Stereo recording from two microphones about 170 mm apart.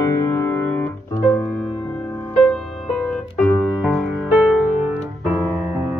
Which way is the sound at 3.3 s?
5° left (ahead or behind).